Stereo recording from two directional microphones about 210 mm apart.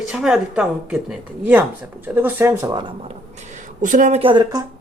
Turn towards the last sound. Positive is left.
turn(degrees=-20)  # may be behind; listen again after turning